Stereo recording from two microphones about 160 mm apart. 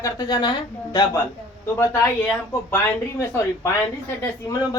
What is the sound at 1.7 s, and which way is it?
A woman's voice, 15° left (ahead or behind).